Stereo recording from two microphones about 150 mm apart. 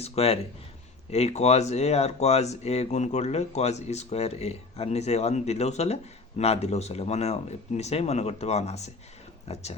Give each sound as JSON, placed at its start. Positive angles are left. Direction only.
{"t": 0.0, "sound": "speech", "side_deg": 40}